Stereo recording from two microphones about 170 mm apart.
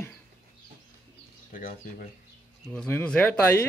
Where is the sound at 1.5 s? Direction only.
55° left (ahead or behind).